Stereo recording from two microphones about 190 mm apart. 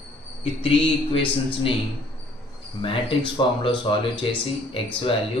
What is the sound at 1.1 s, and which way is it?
Speech, 25° left (ahead or behind).